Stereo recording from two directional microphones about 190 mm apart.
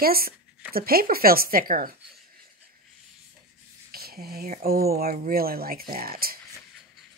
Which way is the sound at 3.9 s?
55° right (ahead or behind).